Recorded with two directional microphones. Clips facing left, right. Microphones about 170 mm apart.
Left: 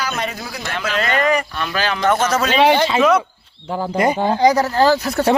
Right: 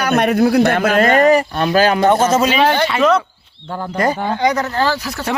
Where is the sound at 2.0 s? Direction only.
25° right (ahead or behind).